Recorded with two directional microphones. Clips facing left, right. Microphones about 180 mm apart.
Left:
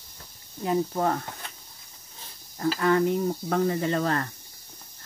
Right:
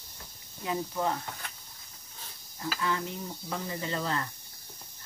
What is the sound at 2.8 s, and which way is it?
Speech, 55° left (ahead or behind).